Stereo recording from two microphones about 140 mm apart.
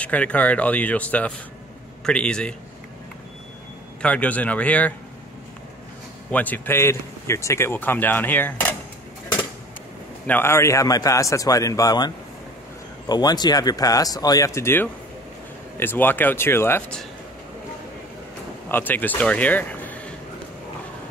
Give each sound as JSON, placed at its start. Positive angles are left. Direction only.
{"t": 0.0, "sound": "speech", "side_deg": 10}
{"t": 4.0, "sound": "speech", "side_deg": 10}
{"t": 6.3, "sound": "speech", "side_deg": 10}
{"t": 10.2, "sound": "a man's voice", "side_deg": 15}
{"t": 13.1, "sound": "a man's voice", "side_deg": 30}
{"t": 18.7, "sound": "speech", "side_deg": 15}